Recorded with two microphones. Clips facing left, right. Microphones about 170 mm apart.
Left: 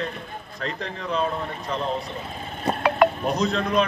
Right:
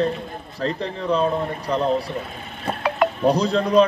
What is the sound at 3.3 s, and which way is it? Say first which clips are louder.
Speech: right 5 dB; 35° right (ahead or behind).